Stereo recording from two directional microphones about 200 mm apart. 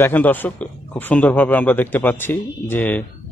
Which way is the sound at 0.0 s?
10° left (ahead or behind).